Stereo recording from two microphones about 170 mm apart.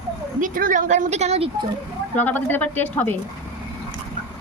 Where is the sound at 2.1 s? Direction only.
10° left (ahead or behind).